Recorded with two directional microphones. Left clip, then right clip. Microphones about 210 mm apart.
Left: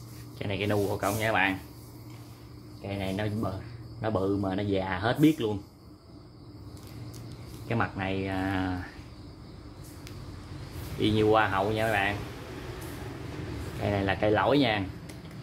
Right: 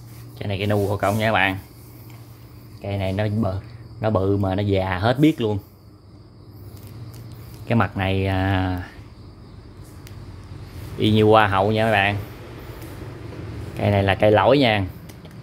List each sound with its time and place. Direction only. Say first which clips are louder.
0.4 s speech: right 6 dB; 20° right (ahead or behind)
0.8 s speech: right 7 dB; 40° right (ahead or behind)
2.8 s speech: right 8 dB; 40° right (ahead or behind)
7.6 s speech: right 8 dB; 45° right (ahead or behind)
11.0 s speech: right 8 dB; 35° right (ahead or behind)
13.8 s speech: right 9 dB; 40° right (ahead or behind)